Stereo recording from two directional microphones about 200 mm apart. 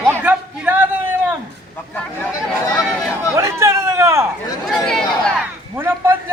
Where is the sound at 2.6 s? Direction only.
15° left (ahead or behind).